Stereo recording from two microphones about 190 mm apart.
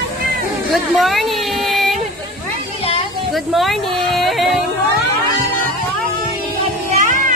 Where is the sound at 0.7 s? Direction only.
Centre (ahead or behind).